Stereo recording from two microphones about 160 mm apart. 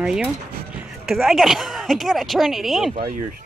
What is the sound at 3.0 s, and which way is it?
Speech, 55° right (ahead or behind).